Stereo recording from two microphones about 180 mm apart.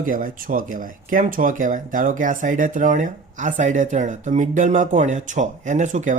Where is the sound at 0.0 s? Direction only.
50° right (ahead or behind).